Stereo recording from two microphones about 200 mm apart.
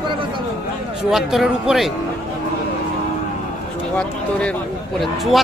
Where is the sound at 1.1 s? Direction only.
Centre (ahead or behind).